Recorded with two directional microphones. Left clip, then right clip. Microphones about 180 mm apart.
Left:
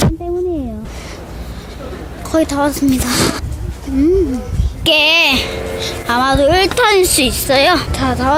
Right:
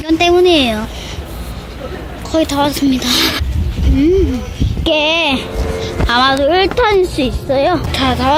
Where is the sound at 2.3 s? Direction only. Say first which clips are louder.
Right 1 dB; 5° left (ahead or behind).